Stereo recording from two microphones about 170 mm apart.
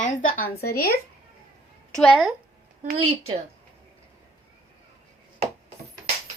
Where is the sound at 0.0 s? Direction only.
50° left (ahead or behind).